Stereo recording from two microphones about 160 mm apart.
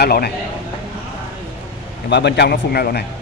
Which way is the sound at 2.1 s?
90° left.